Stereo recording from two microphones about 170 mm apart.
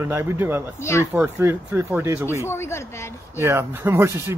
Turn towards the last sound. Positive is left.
turn(degrees=-15)  # may be behind; listen again after turning